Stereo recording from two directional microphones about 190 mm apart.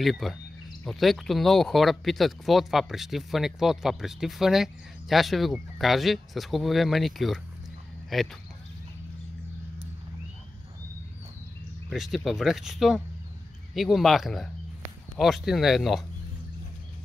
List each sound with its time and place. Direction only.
0.0 s speech: centre (ahead or behind)
11.9 s speech: centre (ahead or behind)